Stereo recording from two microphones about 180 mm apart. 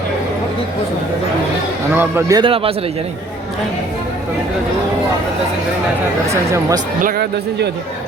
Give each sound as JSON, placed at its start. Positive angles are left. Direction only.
{"t": 2.0, "sound": "speech", "side_deg": -15}
{"t": 2.4, "sound": "a man's voice", "side_deg": -30}
{"t": 6.2, "sound": "speech", "side_deg": -15}
{"t": 7.0, "sound": "speech", "side_deg": -55}